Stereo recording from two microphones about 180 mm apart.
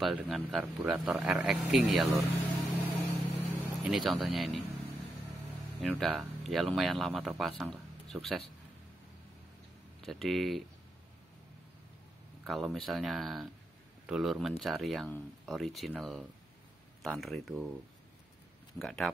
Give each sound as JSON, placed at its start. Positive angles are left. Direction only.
{"t": 0.0, "sound": "speech", "side_deg": 0}
{"t": 3.1, "sound": "music", "side_deg": -10}
{"t": 5.8, "sound": "speech", "side_deg": 0}
{"t": 10.0, "sound": "speech", "side_deg": 0}
{"t": 12.4, "sound": "speech", "side_deg": 0}
{"t": 18.8, "sound": "speech", "side_deg": 0}